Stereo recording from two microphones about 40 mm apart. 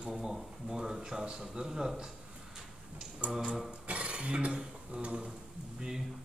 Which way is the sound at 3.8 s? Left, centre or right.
Right.